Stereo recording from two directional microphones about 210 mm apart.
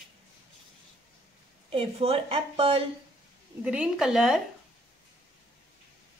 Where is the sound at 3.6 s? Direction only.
5° right (ahead or behind).